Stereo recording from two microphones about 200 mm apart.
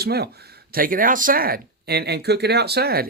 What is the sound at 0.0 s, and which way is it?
Speech, 55° right (ahead or behind).